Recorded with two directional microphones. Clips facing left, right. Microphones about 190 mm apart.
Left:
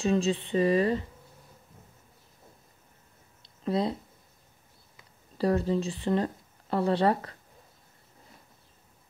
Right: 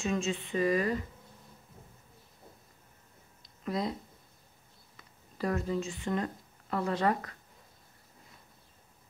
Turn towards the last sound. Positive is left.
turn(degrees=30)  # may be behind; listen again after turning